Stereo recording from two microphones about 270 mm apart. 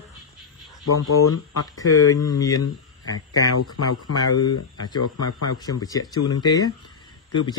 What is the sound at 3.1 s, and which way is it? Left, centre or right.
Speech, left.